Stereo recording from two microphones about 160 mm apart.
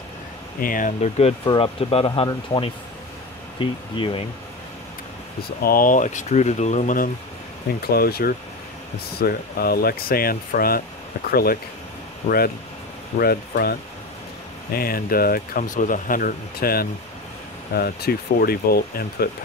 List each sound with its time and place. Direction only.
0.6 s speech: 60° left (ahead or behind); by 4.3 s 35° left (ahead or behind)
5.6 s speech: 65° left (ahead or behind)
7.9 s speech: 75° left (ahead or behind)
12.2 s speech: 40° left (ahead or behind)
13.2 s speech: 70° left (ahead or behind)